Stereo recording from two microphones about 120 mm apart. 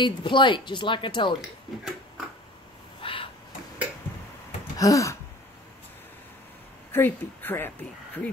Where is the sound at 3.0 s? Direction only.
45° left (ahead or behind).